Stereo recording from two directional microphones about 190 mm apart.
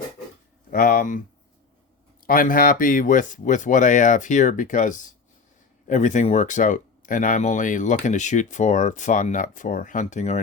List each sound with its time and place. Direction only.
0.7 s speech: 50° left (ahead or behind)
2.2 s speech: 45° left (ahead or behind)